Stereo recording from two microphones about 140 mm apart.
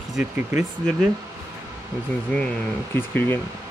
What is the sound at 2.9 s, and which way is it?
Speech, 15° left (ahead or behind).